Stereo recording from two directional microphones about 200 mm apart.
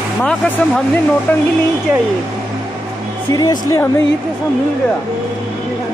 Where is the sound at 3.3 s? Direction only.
20° left (ahead or behind).